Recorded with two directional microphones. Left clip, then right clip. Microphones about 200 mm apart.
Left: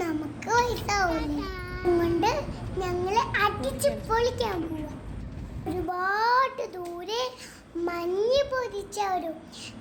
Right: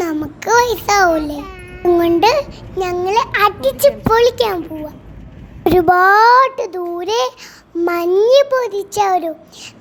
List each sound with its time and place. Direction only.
0.0 s a child's voice: 40° right (ahead or behind)
5.6 s a child's voice: 45° right (ahead or behind)